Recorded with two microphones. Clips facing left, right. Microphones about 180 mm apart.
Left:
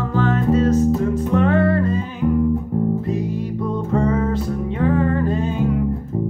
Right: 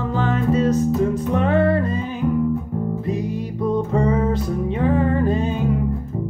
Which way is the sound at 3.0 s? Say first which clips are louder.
Left 1 dB; 15° right (ahead or behind).